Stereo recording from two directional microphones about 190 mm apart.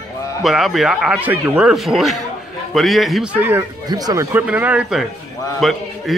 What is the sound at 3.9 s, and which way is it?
Speech, 20° right (ahead or behind).